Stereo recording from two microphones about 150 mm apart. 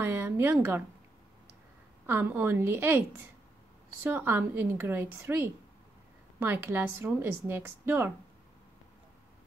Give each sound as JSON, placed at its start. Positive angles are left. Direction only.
{"t": 0.0, "sound": "speech", "side_deg": -15}
{"t": 2.0, "sound": "a woman's voice", "side_deg": -15}